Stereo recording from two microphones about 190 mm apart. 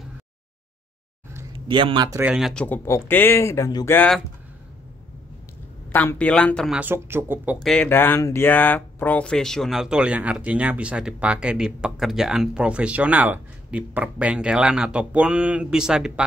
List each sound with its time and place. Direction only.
1.7 s speech: 25° right (ahead or behind)
2.2 s speech: 5° right (ahead or behind)
5.9 s speech: 10° left (ahead or behind)
6.8 s speech: 10° right (ahead or behind)
7.6 s speech: 5° left (ahead or behind)